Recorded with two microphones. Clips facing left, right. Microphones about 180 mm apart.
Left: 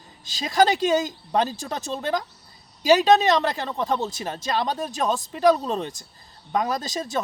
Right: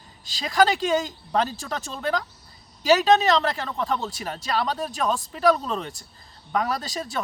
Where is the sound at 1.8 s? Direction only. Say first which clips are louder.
Left 1 dB; 20° left (ahead or behind).